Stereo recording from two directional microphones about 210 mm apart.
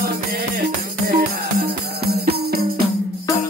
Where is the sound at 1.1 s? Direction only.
45° right (ahead or behind).